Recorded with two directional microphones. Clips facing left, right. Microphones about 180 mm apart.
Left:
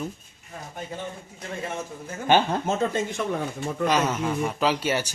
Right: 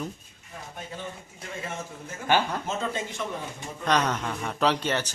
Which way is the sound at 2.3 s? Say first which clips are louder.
Left 4 dB; 25° left (ahead or behind).